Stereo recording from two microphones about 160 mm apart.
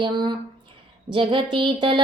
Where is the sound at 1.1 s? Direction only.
30° right (ahead or behind).